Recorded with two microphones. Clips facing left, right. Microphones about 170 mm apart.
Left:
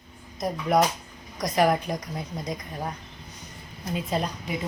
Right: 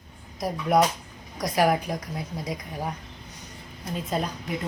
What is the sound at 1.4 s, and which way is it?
A woman's voice, 5° right (ahead or behind).